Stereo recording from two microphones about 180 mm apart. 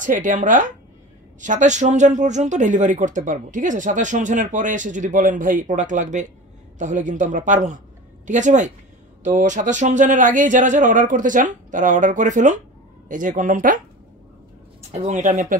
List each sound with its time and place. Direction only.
0.0 s speech: 45° right (ahead or behind)
14.8 s speech: 40° right (ahead or behind)